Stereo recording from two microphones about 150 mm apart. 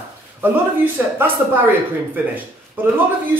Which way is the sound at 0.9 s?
15° right (ahead or behind).